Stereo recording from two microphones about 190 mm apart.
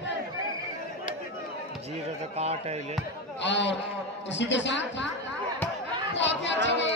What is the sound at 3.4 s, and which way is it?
A man's voice, 70° left (ahead or behind).